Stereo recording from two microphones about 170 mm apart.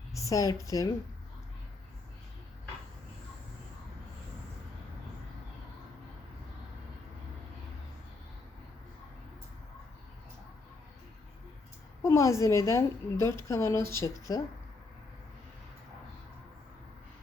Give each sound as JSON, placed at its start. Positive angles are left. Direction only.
{"t": 0.1, "sound": "speech", "side_deg": 20}
{"t": 12.0, "sound": "a woman's voice", "side_deg": 15}